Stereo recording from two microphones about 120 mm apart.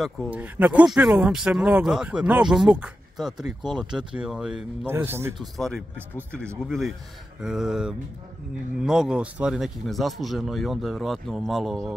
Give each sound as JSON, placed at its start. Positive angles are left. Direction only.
{"t": 0.3, "sound": "speech", "side_deg": -10}
{"t": 4.8, "sound": "a man's voice", "side_deg": -20}
{"t": 5.4, "sound": "speech", "side_deg": 5}